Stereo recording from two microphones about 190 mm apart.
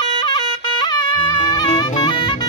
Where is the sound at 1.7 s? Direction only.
25° left (ahead or behind).